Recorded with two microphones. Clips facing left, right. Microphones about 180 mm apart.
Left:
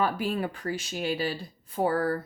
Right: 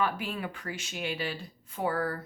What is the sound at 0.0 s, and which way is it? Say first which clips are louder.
A woman's voice: left 4 dB; 40° left (ahead or behind).